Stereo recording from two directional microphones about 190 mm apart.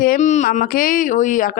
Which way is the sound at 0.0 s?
45° left (ahead or behind).